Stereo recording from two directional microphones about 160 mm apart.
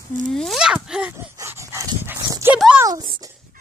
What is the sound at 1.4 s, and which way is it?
Dog, 15° right (ahead or behind).